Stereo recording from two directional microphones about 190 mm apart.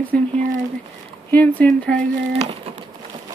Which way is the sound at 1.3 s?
10° left (ahead or behind).